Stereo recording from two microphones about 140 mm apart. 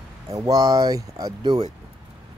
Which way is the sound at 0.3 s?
25° right (ahead or behind).